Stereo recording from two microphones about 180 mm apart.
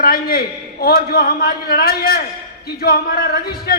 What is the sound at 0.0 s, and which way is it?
A man's voice, 55° left (ahead or behind).